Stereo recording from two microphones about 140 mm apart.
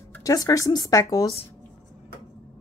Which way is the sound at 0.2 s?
25° left (ahead or behind).